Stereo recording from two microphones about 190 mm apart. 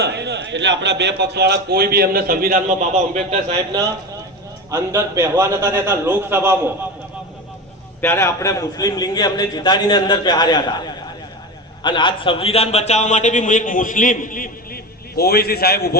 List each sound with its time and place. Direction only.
0.0 s a man's voice: 60° right (ahead or behind); by 3.4 s 35° right (ahead or behind)
4.7 s a man's voice: 15° right (ahead or behind)
8.0 s a man's voice: 15° left (ahead or behind); by 16.0 s 55° left (ahead or behind)